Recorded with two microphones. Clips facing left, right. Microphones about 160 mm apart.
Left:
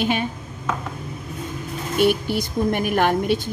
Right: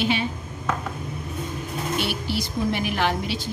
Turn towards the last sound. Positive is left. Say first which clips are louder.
# left 6 dB
turn(degrees=50)  # may be behind; listen again after turning